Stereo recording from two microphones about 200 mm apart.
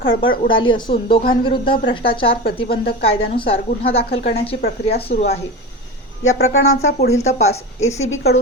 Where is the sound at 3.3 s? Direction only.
30° left (ahead or behind).